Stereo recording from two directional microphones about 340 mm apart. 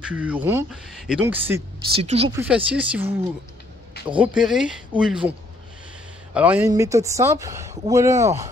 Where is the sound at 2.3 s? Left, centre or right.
Centre.